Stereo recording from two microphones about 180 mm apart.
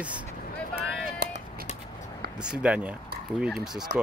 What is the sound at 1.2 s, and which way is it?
Music, 65° right (ahead or behind).